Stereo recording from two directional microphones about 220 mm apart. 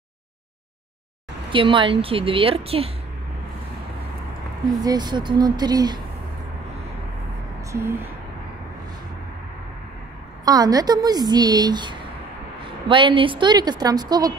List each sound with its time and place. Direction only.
1.5 s a woman's voice: 25° right (ahead or behind)
4.8 s a woman's voice: 20° right (ahead or behind)
7.7 s speech: 10° right (ahead or behind)
10.4 s a woman's voice: 15° right (ahead or behind)